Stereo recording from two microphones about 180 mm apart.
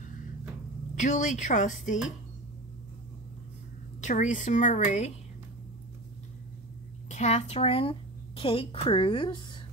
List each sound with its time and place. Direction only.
0.9 s a woman's voice: 40° left (ahead or behind)
4.0 s a woman's voice: 45° left (ahead or behind)
7.1 s speech: 40° left (ahead or behind)